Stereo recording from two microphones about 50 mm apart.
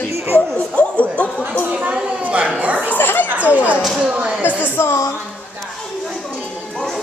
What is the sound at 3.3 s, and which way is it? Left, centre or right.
Chatter, right.